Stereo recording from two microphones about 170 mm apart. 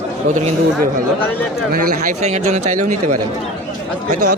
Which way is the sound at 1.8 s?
55° right (ahead or behind).